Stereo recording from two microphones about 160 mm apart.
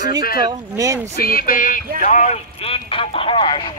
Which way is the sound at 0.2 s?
70° left (ahead or behind).